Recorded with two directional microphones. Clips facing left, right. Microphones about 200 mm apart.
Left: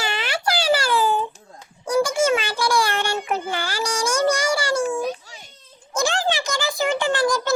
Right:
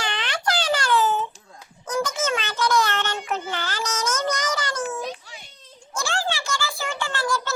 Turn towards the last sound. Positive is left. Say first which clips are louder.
# left 6 dB
turn(degrees=15)  # may be behind; listen again after turning